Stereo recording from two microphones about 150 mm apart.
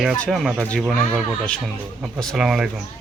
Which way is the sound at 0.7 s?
5° left (ahead or behind).